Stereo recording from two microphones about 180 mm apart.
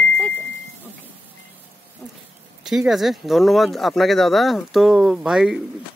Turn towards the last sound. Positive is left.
turn(degrees=-5)  # may be behind; listen again after turning